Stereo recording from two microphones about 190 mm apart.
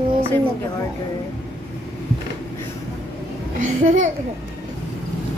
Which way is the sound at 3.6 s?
40° right (ahead or behind).